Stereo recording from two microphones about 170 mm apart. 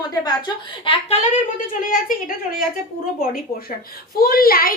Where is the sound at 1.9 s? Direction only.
55° left (ahead or behind).